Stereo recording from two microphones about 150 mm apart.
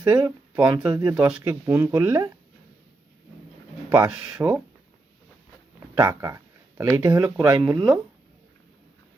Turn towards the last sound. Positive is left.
turn(degrees=-25)  # may be behind; listen again after turning